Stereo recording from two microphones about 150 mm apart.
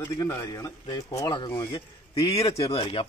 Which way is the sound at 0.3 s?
20° left (ahead or behind).